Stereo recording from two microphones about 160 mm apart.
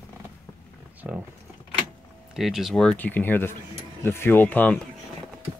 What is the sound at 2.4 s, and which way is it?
Speech, centre (ahead or behind).